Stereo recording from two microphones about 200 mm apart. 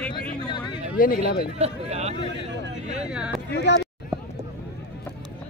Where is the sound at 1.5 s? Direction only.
30° right (ahead or behind).